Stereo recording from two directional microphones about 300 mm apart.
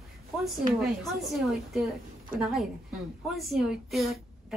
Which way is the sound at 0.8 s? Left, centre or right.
Centre.